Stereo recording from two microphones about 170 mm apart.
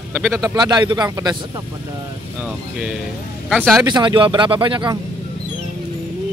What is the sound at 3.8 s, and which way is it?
Speech, 25° right (ahead or behind).